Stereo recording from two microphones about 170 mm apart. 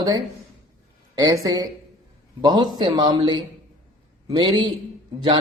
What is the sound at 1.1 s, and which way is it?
Speech, 20° right (ahead or behind).